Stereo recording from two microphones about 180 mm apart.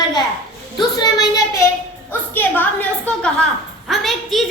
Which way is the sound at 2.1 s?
10° left (ahead or behind).